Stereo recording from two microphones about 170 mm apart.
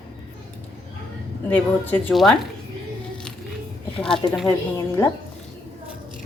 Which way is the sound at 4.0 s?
Centre (ahead or behind).